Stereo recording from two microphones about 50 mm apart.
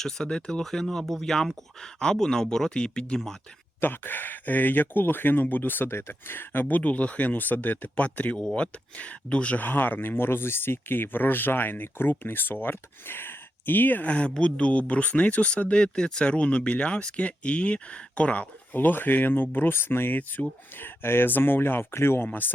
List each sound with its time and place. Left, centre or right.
0.0 s speech: centre
3.8 s speech: left
5.9 s speech: left
9.6 s speech: left
14.1 s speech: left
18.7 s speech: left